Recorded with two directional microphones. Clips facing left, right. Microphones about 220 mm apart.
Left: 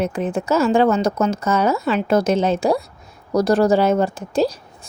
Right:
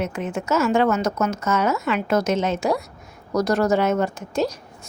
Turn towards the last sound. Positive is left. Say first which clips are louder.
# left 4 dB
turn(degrees=30)  # may be behind; listen again after turning